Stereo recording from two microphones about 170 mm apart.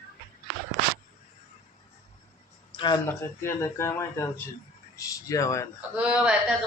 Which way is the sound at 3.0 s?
15° left (ahead or behind).